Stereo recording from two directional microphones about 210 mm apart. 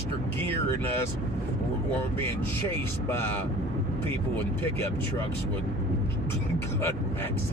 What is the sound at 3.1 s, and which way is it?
Speech, 10° left (ahead or behind).